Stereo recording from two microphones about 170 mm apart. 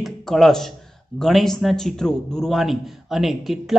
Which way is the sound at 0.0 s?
Centre (ahead or behind).